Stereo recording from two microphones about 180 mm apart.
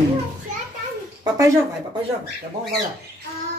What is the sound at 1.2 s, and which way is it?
Speech, 20° right (ahead or behind).